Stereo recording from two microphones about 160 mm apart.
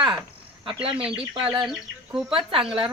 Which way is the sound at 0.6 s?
35° right (ahead or behind).